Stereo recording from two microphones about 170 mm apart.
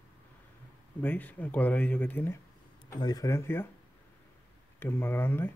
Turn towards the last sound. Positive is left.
turn(degrees=10)  # may be behind; listen again after turning